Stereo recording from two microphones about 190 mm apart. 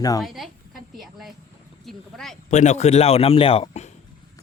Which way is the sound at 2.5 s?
40° left (ahead or behind).